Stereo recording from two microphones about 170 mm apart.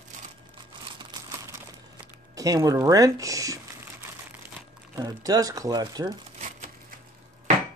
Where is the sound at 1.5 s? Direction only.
15° right (ahead or behind).